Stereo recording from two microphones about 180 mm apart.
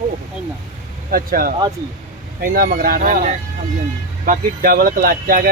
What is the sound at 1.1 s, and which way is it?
Speech, 55° right (ahead or behind).